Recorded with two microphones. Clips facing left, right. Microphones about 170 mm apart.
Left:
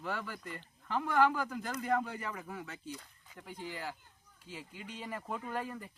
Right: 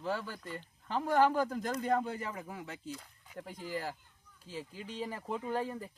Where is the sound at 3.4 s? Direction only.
40° right (ahead or behind).